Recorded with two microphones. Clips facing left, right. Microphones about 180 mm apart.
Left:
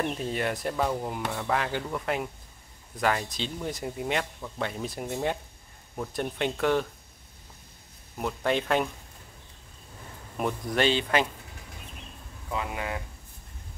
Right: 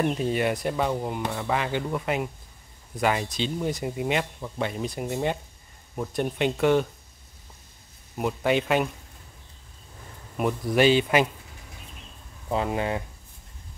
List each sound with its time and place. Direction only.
0.0 s speech: 5° right (ahead or behind)
8.2 s speech: 10° right (ahead or behind)
10.3 s speech: 5° right (ahead or behind)
12.4 s speech: 30° right (ahead or behind)